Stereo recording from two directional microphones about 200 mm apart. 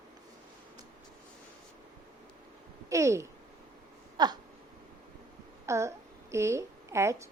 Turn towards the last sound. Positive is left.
turn(degrees=-15)  # may be behind; listen again after turning